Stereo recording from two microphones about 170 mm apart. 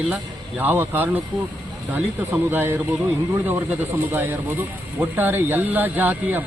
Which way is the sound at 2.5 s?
10° right (ahead or behind).